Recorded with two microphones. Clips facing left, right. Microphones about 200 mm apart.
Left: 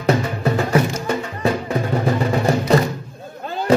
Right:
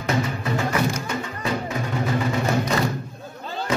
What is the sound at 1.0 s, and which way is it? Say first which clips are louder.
Music: left 7 dB; 35° left (ahead or behind).